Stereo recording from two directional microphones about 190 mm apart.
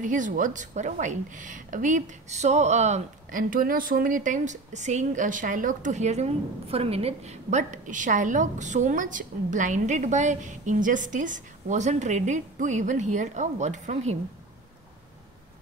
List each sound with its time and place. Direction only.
0.0 s a woman's voice: 45° right (ahead or behind)